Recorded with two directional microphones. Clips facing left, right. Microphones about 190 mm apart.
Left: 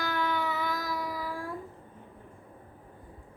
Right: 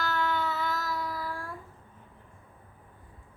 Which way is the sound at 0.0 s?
15° left (ahead or behind).